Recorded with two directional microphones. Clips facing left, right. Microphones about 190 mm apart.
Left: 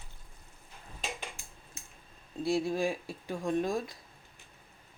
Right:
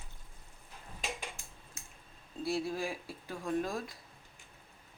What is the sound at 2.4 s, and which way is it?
Speech, 15° left (ahead or behind).